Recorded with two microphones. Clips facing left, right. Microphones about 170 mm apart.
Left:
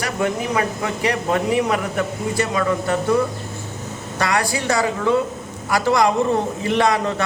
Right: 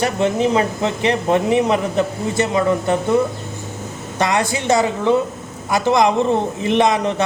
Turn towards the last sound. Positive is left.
turn(degrees=-20)  # may be behind; listen again after turning